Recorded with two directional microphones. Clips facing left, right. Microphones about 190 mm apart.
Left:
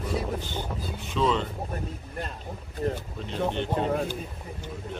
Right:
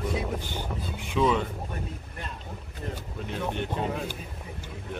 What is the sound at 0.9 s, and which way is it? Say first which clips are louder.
Speech: right 1 dB; 15° right (ahead or behind).